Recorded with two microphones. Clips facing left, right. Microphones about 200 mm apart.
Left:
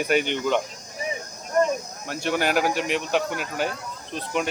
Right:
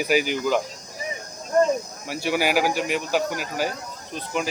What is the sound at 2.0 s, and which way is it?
Speech, 5° right (ahead or behind).